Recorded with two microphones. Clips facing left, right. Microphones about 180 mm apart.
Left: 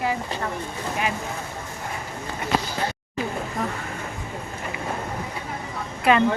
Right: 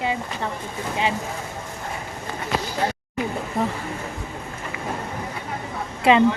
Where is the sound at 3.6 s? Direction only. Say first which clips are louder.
Right 5 dB; 30° right (ahead or behind).